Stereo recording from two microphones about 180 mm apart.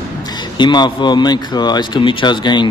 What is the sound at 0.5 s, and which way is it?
Speech, 25° left (ahead or behind).